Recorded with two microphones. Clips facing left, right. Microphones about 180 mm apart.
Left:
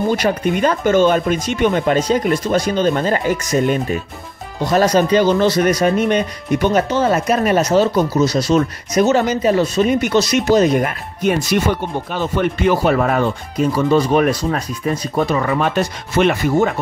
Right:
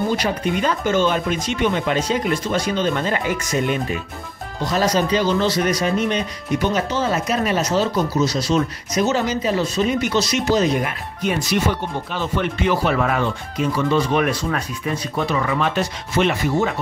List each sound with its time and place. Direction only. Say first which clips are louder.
0.2 s speech: left 5 dB; 50° left (ahead or behind)
4.6 s speech: left 5 dB; 55° left (ahead or behind)